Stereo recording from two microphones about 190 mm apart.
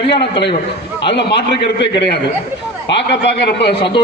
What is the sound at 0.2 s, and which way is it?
A man's voice, 65° left (ahead or behind).